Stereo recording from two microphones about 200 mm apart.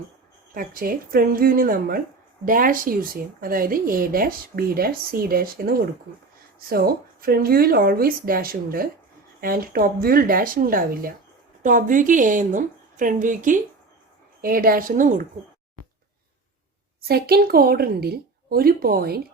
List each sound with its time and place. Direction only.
0.5 s a woman's voice: 45° right (ahead or behind)
17.0 s speech: 50° right (ahead or behind)